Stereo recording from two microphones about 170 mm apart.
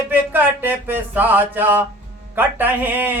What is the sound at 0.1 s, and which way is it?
Speech, 10° right (ahead or behind).